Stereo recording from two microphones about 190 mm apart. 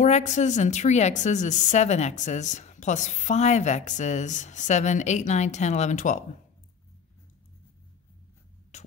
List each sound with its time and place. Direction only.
0.0 s a woman's voice: 40° left (ahead or behind)
8.7 s music: 40° left (ahead or behind)